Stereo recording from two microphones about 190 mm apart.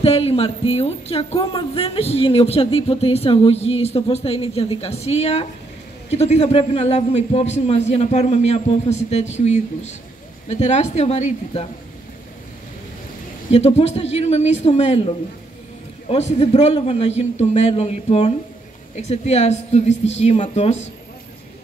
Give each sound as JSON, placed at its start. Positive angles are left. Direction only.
{"t": 0.0, "sound": "speech", "side_deg": 30}
{"t": 13.5, "sound": "speech", "side_deg": 35}
{"t": 16.1, "sound": "speech", "side_deg": 35}